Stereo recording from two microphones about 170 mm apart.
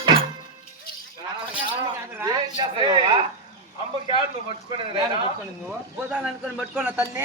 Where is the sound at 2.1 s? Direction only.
25° right (ahead or behind).